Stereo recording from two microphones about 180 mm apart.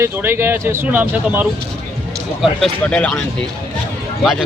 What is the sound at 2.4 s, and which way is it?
Speech, 5° left (ahead or behind).